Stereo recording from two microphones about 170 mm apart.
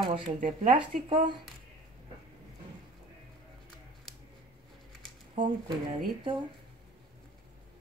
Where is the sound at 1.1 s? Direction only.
25° right (ahead or behind).